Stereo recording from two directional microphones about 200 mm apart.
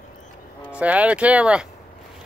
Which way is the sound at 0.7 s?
5° right (ahead or behind).